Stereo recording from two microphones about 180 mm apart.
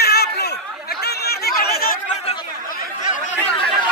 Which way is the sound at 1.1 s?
60° left (ahead or behind).